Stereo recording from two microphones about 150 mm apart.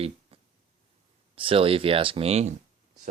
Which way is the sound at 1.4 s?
35° right (ahead or behind).